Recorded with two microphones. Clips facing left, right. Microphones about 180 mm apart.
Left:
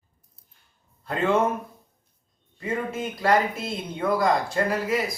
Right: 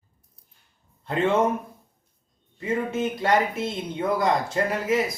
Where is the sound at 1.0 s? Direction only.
25° right (ahead or behind).